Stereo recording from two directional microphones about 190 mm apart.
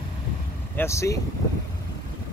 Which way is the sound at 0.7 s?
15° left (ahead or behind).